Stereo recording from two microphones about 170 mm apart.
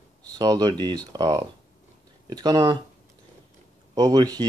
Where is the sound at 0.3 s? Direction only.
20° right (ahead or behind).